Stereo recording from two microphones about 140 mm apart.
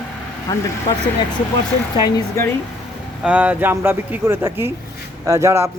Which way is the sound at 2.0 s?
25° left (ahead or behind).